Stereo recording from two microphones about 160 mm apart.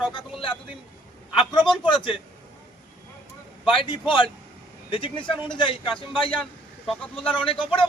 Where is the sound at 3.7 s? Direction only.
30° left (ahead or behind).